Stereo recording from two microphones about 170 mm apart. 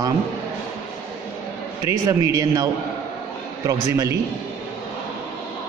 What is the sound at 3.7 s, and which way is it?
Speech, 20° right (ahead or behind).